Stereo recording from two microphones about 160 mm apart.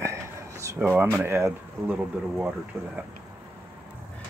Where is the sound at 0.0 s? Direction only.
20° right (ahead or behind).